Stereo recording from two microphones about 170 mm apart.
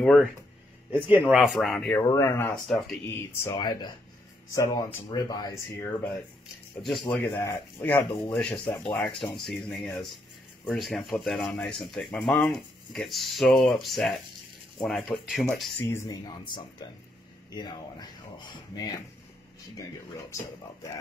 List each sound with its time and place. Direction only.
0.9 s speech: 10° right (ahead or behind)
2.0 s speech: 20° left (ahead or behind)
2.5 s speech: centre (ahead or behind)
3.1 s speech: 15° left (ahead or behind)
6.8 s speech: centre (ahead or behind)
7.3 s speech: 15° left (ahead or behind)
15.9 s speech: 20° left (ahead or behind)